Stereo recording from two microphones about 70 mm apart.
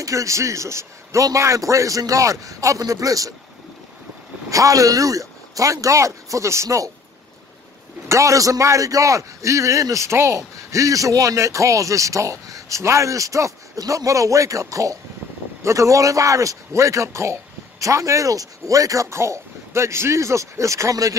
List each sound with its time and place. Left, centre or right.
0.0 s a man's voice: right
4.5 s a man's voice: right
8.1 s a man's voice: right